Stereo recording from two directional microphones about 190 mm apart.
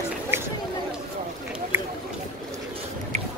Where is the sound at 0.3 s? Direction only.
10° right (ahead or behind).